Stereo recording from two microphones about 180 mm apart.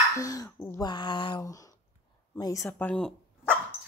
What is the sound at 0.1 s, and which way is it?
Speech, 20° left (ahead or behind).